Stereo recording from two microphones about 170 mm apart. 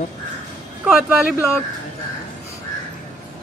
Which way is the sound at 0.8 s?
Centre (ahead or behind).